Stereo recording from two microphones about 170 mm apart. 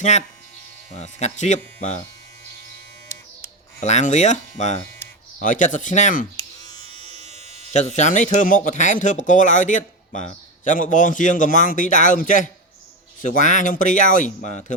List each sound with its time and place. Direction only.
0.0 s speech: 45° left (ahead or behind)
3.8 s speech: 45° left (ahead or behind)
7.0 s electric shaver: 35° right (ahead or behind)
7.7 s speech: 45° left (ahead or behind)